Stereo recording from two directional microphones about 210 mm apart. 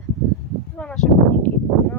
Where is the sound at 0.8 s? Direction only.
5° left (ahead or behind).